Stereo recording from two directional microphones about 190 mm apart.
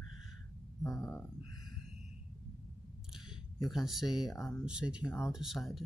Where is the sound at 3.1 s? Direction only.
Centre (ahead or behind).